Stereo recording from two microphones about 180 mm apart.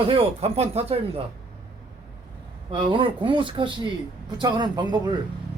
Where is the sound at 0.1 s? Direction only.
35° right (ahead or behind).